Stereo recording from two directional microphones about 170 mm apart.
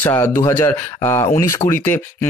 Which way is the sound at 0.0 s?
15° left (ahead or behind).